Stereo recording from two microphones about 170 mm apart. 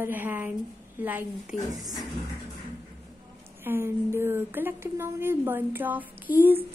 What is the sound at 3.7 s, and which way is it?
Speech, 15° right (ahead or behind).